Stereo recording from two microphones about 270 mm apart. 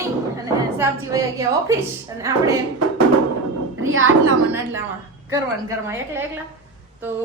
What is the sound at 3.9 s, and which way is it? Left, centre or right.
Speech, right.